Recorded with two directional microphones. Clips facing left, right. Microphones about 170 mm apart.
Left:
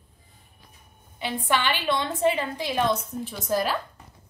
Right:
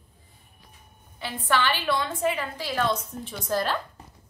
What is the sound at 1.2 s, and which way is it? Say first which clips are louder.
A woman's voice: even; 15° left (ahead or behind).